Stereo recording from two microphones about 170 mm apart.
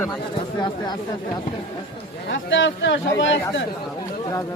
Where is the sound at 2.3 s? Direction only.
90° left.